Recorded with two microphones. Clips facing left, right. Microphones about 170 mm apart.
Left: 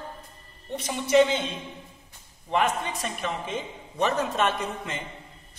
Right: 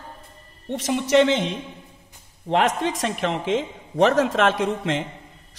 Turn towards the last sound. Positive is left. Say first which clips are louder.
# right 9 dB
turn(degrees=-90)